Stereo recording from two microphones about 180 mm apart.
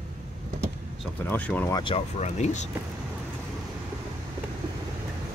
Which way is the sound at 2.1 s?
40° left (ahead or behind).